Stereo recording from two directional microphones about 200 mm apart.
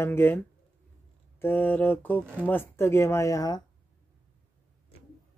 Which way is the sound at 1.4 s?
10° left (ahead or behind).